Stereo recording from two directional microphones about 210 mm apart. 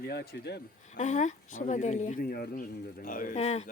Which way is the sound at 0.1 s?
55° left (ahead or behind).